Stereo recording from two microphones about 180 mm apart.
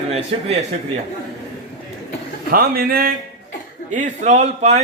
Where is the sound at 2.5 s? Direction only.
55° right (ahead or behind).